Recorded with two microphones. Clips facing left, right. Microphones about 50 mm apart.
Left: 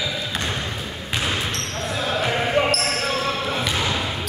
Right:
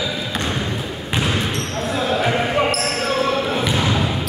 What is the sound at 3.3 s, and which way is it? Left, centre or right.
Basketball bounce, centre.